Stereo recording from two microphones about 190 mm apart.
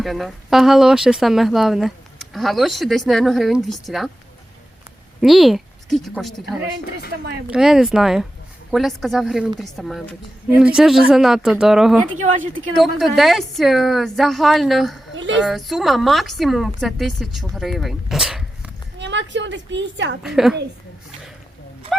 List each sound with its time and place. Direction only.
0.0 s speech: centre (ahead or behind)
5.2 s speech: centre (ahead or behind)
7.4 s speech: 5° right (ahead or behind)
15.1 s a child's voice: 80° right
15.4 s speech: centre (ahead or behind)
18.9 s a woman's voice: 70° right (ahead or behind)
20.2 s speech: centre (ahead or behind)